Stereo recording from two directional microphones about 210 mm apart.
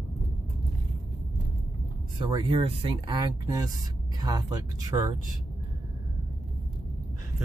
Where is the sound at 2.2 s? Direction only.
20° right (ahead or behind).